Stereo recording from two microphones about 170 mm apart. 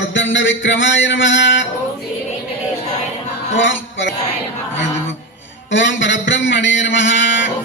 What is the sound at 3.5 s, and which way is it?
Speech, 90° left.